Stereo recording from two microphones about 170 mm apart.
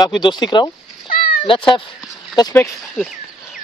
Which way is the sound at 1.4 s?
30° left (ahead or behind).